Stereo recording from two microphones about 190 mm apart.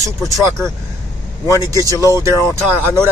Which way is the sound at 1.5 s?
20° right (ahead or behind).